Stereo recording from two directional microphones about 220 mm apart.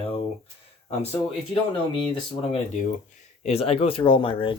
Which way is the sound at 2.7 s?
35° left (ahead or behind).